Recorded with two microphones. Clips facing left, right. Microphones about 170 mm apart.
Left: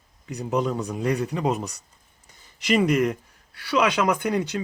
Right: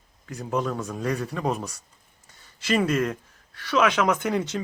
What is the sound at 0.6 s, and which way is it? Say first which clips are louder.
A man's voice: left 3 dB; 20° left (ahead or behind).